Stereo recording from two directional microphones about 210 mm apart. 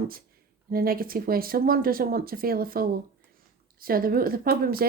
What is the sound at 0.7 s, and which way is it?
Speech, 45° right (ahead or behind).